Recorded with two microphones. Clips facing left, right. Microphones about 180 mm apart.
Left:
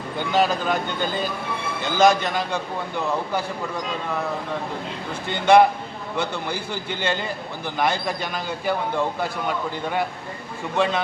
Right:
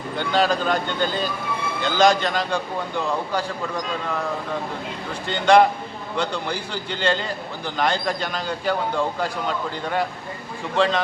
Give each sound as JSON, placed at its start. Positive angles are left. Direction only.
{"t": 0.2, "sound": "a man's voice", "side_deg": 5}
{"t": 5.3, "sound": "a man's voice", "side_deg": 10}